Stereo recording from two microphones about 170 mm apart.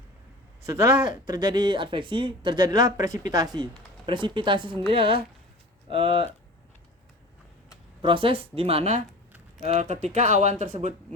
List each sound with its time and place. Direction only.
0.6 s speech: 15° right (ahead or behind)
1.3 s speech: 25° right (ahead or behind)
8.0 s speech: 30° right (ahead or behind)